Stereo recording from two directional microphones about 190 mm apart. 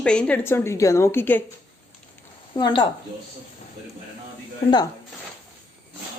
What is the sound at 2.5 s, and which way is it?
Speech, 25° left (ahead or behind).